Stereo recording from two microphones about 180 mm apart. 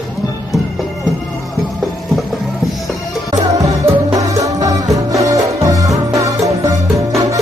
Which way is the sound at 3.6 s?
20° right (ahead or behind).